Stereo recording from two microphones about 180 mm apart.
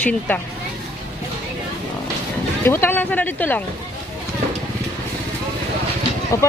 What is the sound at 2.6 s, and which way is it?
Speech, 15° left (ahead or behind).